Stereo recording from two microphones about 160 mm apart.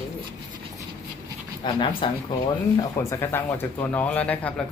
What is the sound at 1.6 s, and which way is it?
Speech, 30° left (ahead or behind).